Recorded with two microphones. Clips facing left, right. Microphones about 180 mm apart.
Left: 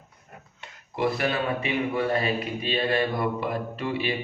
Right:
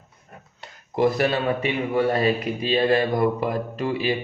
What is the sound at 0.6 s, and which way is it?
Speech, 40° right (ahead or behind).